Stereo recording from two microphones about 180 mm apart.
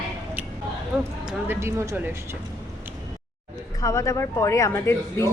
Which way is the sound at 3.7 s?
20° left (ahead or behind).